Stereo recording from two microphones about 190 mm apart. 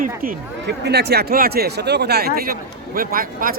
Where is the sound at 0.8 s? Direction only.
60° right (ahead or behind).